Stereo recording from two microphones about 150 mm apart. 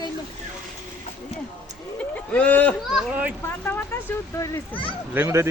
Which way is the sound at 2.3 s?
10° left (ahead or behind).